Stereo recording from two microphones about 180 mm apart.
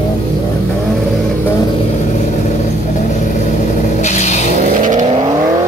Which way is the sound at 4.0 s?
40° left (ahead or behind).